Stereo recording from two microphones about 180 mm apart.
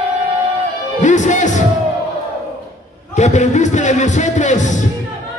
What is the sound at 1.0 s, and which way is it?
Speech, 45° left (ahead or behind).